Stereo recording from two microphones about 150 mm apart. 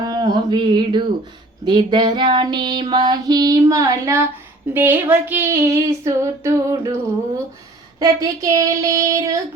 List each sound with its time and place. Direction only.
0.0 s mantra: 25° right (ahead or behind)
1.6 s female singing: 30° right (ahead or behind)